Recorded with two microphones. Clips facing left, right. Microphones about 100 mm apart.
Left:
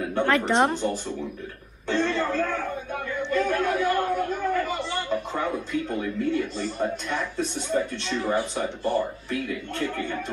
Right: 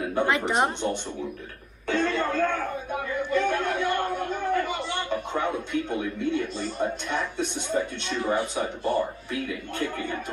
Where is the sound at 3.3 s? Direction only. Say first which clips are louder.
Left 2 dB; 5° left (ahead or behind).